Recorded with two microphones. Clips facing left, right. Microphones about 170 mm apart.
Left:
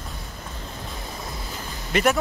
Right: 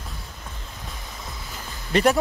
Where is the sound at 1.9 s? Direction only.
35° right (ahead or behind).